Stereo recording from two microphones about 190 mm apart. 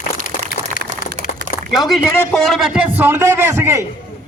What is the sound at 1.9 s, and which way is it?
A man's voice, centre (ahead or behind).